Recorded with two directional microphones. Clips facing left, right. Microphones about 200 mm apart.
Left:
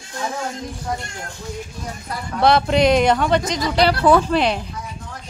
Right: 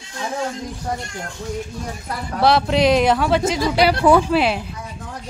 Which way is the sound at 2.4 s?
Centre (ahead or behind).